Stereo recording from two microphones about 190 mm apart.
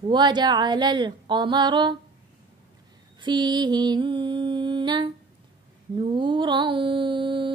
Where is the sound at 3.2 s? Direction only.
25° right (ahead or behind).